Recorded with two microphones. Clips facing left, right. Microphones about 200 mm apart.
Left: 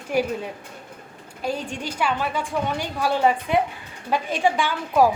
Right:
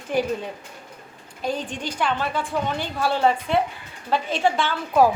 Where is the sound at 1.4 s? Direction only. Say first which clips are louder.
Even; 10° left (ahead or behind).